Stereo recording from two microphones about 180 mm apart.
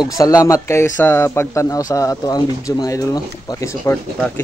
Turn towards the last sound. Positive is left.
turn(degrees=5)  # may be behind; listen again after turning